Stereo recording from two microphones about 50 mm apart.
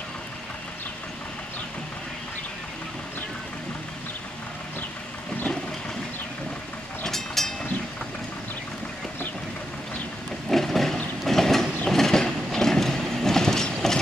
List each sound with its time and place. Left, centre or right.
7.0 s vehicle: centre
10.5 s a sound: centre
11.2 s vehicle: centre
11.9 s train: centre